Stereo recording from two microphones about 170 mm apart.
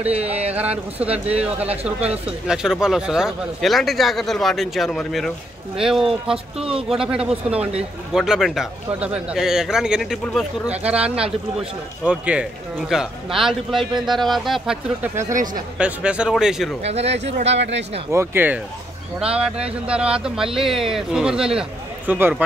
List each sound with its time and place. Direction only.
1.3 s speech: 10° right (ahead or behind)
15.2 s speech: 50° right (ahead or behind)
15.8 s speech: 5° right (ahead or behind)
16.8 s speech: 40° right (ahead or behind)
17.5 s speech: 90° right
18.1 s a man's voice: 15° right (ahead or behind)